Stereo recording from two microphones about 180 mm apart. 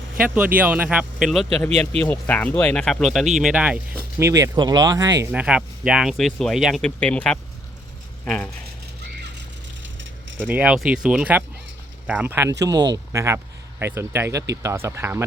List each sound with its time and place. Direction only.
0.2 s speech: 10° right (ahead or behind)
1.7 s speech: 35° right (ahead or behind)
2.0 s speech: 10° left (ahead or behind)
4.2 s speech: 15° right (ahead or behind)
5.2 s speech: 10° right (ahead or behind)
10.4 s speech: 5° right (ahead or behind)